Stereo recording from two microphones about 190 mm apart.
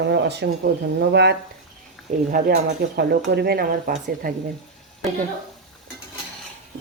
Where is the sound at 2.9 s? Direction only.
60° right (ahead or behind).